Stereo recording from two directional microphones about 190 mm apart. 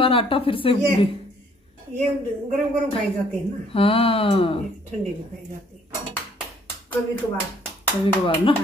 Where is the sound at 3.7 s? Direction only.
30° left (ahead or behind).